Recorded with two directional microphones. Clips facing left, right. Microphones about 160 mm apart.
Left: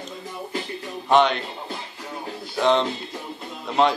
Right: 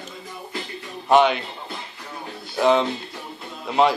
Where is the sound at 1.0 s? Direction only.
5° right (ahead or behind).